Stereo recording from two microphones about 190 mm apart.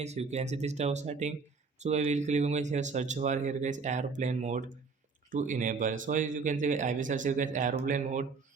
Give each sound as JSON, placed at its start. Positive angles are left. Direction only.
{"t": 0.0, "sound": "speech", "side_deg": -35}